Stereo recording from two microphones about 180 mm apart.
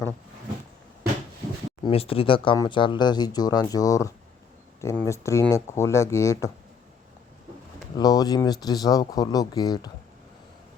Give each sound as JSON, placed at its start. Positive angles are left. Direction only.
{"t": 1.8, "sound": "speech", "side_deg": 30}
{"t": 7.9, "sound": "speech", "side_deg": 20}